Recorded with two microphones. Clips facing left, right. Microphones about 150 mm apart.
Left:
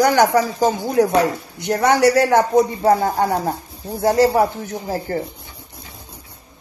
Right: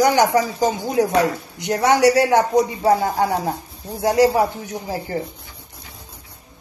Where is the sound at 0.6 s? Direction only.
45° left (ahead or behind).